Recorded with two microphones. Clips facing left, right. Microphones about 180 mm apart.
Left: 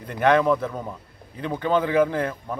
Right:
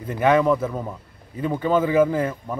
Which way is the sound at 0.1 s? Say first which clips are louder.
Right 1 dB; 5° right (ahead or behind).